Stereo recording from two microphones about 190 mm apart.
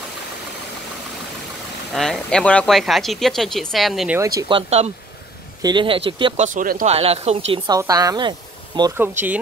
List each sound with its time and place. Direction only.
1.9 s speech: centre (ahead or behind)
4.2 s speech: 20° right (ahead or behind); by 4.9 s 35° right (ahead or behind)
5.6 s speech: 25° right (ahead or behind)
6.3 s speech: 40° right (ahead or behind)
6.9 s speech: 35° right (ahead or behind)
7.5 s speech: 20° right (ahead or behind)